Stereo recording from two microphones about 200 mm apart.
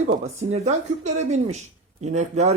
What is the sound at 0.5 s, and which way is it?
Speech, 35° right (ahead or behind).